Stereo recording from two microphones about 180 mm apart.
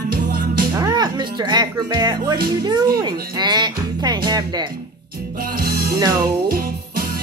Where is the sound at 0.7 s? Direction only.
25° right (ahead or behind).